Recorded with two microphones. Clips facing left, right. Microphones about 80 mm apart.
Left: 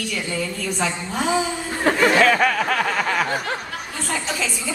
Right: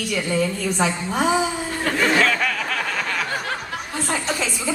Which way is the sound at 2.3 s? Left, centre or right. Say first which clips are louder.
Left 5 dB; left.